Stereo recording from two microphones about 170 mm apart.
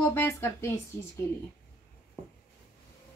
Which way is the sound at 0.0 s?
15° left (ahead or behind).